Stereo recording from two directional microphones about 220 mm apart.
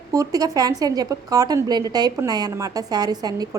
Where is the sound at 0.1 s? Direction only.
15° right (ahead or behind).